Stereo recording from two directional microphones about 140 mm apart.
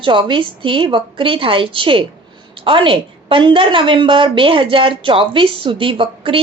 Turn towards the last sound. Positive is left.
turn(degrees=-40)  # may be behind; listen again after turning